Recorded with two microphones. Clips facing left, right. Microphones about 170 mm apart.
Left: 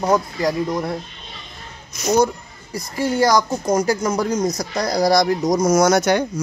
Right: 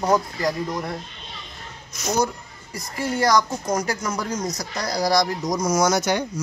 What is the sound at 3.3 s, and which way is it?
Speech, 30° left (ahead or behind).